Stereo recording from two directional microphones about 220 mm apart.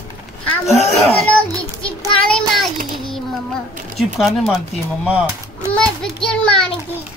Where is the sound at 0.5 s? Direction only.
Centre (ahead or behind).